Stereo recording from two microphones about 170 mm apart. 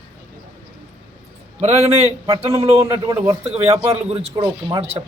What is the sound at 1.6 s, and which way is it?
Speech, 40° right (ahead or behind).